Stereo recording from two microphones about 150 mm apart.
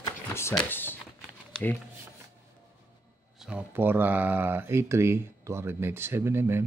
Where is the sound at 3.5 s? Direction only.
10° right (ahead or behind).